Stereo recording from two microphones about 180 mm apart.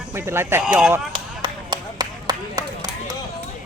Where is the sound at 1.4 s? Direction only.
25° right (ahead or behind).